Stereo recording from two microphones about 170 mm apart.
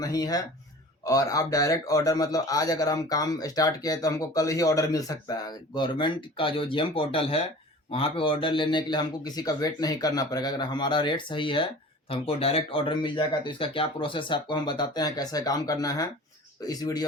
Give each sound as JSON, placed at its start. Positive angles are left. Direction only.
{"t": 0.0, "sound": "a man's voice", "side_deg": 20}